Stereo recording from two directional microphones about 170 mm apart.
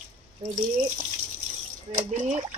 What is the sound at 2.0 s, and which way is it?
Speech, 40° right (ahead or behind).